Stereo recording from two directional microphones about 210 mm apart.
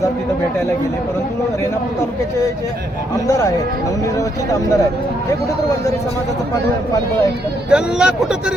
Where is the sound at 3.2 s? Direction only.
15° left (ahead or behind).